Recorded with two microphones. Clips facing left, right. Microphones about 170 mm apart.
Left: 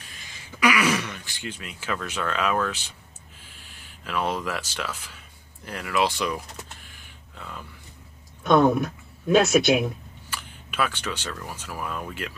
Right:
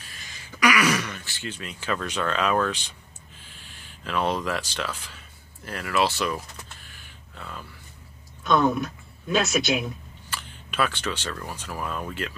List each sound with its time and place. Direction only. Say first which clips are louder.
0.7 s throat clearing: even; 25° left (ahead or behind)
1.0 s speech: even; 15° left (ahead or behind)
8.5 s speech: left 3 dB; 50° left (ahead or behind)
10.3 s speech: right 1 dB; 10° left (ahead or behind)